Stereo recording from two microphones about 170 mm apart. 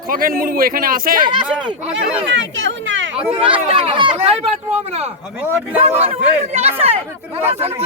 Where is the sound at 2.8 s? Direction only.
90° right.